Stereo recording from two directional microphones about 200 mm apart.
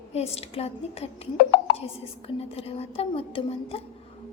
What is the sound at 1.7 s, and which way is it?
A woman's voice, 30° left (ahead or behind).